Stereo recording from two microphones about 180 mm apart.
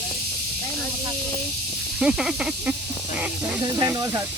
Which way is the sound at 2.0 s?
5° right (ahead or behind).